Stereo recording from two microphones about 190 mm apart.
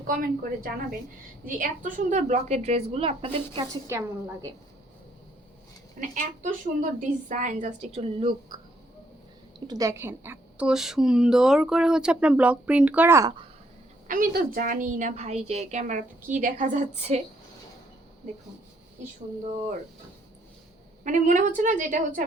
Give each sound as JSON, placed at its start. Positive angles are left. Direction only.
{"t": 0.1, "sound": "a woman's voice", "side_deg": -50}
{"t": 3.8, "sound": "a woman's voice", "side_deg": -15}
{"t": 6.0, "sound": "a woman's voice", "side_deg": -40}
{"t": 9.6, "sound": "a woman's voice", "side_deg": -20}
{"t": 14.1, "sound": "a woman's voice", "side_deg": -45}
{"t": 21.0, "sound": "a woman's voice", "side_deg": -40}